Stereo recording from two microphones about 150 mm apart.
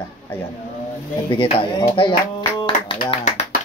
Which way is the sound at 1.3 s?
35° left (ahead or behind).